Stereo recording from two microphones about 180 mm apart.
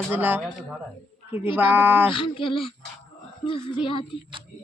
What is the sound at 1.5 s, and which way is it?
Speech, 10° right (ahead or behind).